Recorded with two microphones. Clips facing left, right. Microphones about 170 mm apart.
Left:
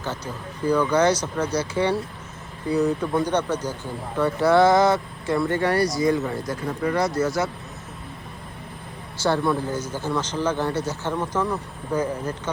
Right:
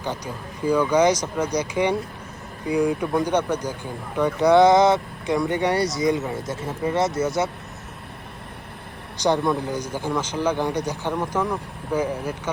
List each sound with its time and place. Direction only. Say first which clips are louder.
0.6 s speech: right 1 dB; 10° right (ahead or behind)
9.1 s speech: right 1 dB; 15° right (ahead or behind)